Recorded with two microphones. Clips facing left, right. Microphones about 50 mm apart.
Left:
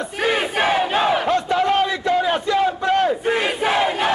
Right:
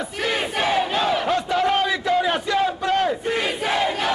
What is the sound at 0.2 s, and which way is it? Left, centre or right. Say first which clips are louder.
Crowd: left 4 dB; centre.